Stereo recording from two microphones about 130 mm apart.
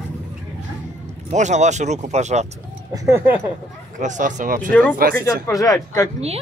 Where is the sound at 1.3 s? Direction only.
65° right (ahead or behind).